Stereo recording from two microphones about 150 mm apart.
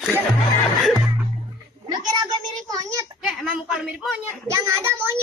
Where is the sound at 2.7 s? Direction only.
20° right (ahead or behind).